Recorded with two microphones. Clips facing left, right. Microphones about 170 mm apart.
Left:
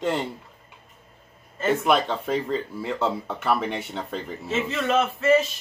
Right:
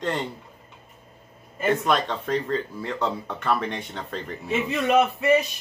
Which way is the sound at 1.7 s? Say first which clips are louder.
Left 2 dB; 10° left (ahead or behind).